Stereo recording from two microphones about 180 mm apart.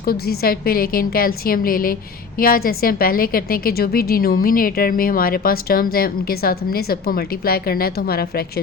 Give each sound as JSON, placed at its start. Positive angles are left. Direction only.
{"t": 0.0, "sound": "a woman's voice", "side_deg": 55}